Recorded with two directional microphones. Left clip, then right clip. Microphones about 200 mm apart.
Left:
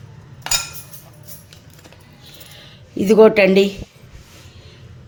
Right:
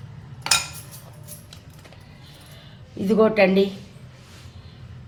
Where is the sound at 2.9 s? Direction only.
45° left (ahead or behind).